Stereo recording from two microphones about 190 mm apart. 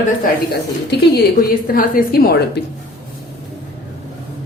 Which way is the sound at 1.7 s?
50° left (ahead or behind).